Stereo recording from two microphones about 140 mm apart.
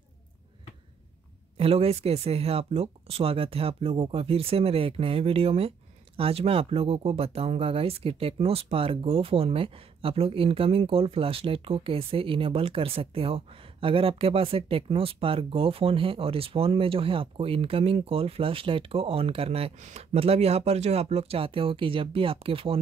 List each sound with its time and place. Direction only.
1.6 s speech: 45° right (ahead or behind)
19.8 s speech: 55° right (ahead or behind)